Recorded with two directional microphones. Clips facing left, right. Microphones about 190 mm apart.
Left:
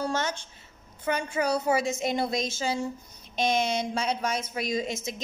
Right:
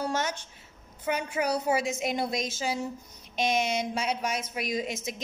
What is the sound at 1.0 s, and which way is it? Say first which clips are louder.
A woman's voice: left 1 dB; 5° right (ahead or behind).